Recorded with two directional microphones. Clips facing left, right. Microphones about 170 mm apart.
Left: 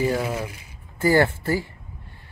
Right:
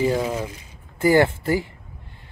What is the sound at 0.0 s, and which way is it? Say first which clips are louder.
Speech: right 2 dB; 15° right (ahead or behind).